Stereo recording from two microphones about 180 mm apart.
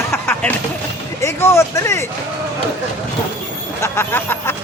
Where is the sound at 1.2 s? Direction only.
15° left (ahead or behind).